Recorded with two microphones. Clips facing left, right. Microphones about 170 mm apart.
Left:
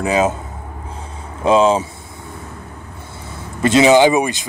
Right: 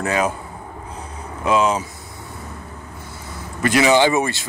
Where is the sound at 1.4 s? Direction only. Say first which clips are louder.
Left 5 dB; 30° left (ahead or behind).